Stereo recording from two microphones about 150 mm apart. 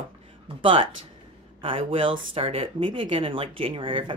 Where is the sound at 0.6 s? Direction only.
35° right (ahead or behind).